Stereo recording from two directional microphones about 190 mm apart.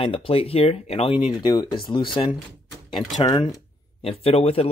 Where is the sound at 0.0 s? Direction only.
30° left (ahead or behind).